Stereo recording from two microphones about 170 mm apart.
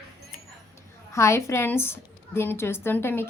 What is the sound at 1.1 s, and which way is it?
A woman's voice, 15° left (ahead or behind).